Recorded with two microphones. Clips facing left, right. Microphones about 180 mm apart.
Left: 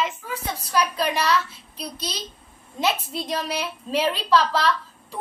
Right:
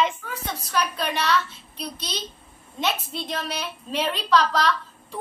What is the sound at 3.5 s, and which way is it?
A woman's voice, 5° left (ahead or behind).